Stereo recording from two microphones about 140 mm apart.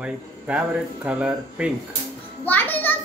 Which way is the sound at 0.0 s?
10° right (ahead or behind).